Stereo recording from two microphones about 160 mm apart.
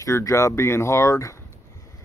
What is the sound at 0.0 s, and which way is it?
Speech, 20° left (ahead or behind).